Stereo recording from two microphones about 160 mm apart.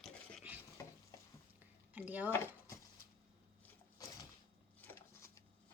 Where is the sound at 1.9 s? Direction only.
10° right (ahead or behind).